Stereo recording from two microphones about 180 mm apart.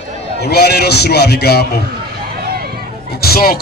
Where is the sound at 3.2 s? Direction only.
60° left (ahead or behind).